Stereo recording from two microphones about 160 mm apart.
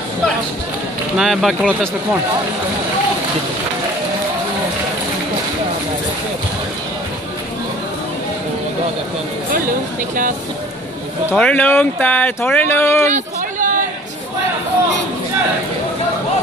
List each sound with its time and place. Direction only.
1.1 s speech: centre (ahead or behind)
11.3 s speech: 10° left (ahead or behind)
13.1 s a sound: 55° right (ahead or behind)